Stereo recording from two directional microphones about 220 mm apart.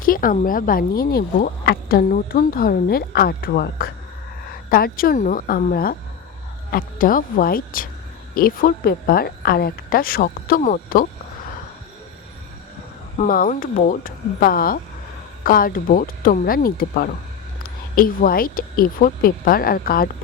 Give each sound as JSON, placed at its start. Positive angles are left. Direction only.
{"t": 0.0, "sound": "speech", "side_deg": 40}
{"t": 13.1, "sound": "speech", "side_deg": 40}